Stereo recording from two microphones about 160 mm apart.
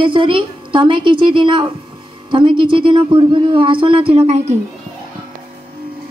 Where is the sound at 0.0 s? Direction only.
30° right (ahead or behind).